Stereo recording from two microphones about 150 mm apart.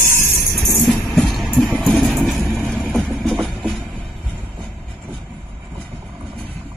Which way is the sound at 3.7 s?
Centre (ahead or behind).